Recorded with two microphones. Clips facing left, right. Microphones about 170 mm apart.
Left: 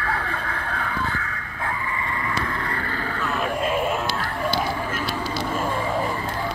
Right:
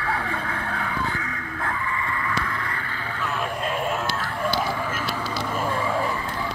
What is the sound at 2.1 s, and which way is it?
Vehicle, 25° left (ahead or behind).